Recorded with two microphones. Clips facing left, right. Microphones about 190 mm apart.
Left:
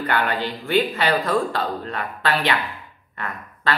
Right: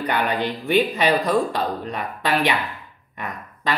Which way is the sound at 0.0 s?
15° right (ahead or behind).